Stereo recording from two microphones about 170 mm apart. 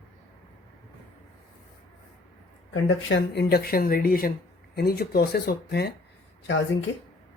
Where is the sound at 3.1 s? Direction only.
85° left.